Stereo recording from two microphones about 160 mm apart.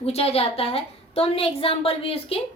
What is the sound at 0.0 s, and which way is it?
A woman's voice, 40° left (ahead or behind).